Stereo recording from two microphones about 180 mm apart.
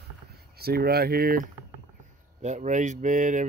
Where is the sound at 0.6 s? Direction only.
60° right (ahead or behind).